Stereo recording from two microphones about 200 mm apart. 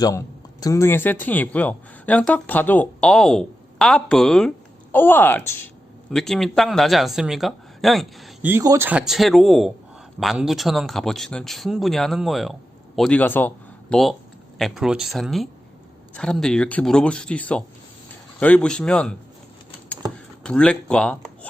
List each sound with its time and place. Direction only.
0.6 s speech: 15° left (ahead or behind)
20.4 s speech: 5° left (ahead or behind)